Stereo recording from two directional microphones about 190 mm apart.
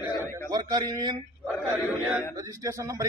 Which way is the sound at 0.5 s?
20° right (ahead or behind).